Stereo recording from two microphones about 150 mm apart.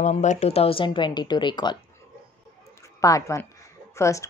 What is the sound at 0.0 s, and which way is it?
Speech, 50° left (ahead or behind).